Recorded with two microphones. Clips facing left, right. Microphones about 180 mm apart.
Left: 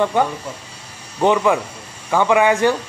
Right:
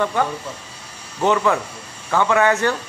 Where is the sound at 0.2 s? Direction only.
15° left (ahead or behind).